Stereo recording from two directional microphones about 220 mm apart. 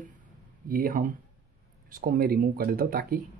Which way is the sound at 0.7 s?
40° right (ahead or behind).